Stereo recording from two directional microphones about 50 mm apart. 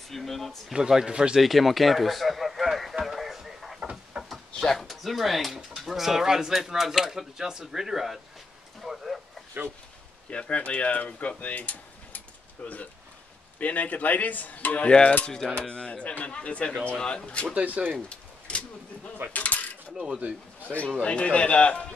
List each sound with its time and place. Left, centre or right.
0.1 s speech: centre
0.7 s speech: centre
1.4 s a sound: centre
4.1 s a sound: centre
4.6 s speech: centre
4.8 s speech: centre
8.8 s a sound: centre
10.3 s speech: left
13.6 s speech: left
14.9 s speech: centre
17.6 s speech: right
18.0 s speech: left
19.3 s coin: left
20.6 s speech: left